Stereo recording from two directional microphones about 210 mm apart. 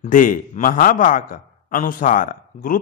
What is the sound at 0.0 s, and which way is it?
Speech, 40° left (ahead or behind).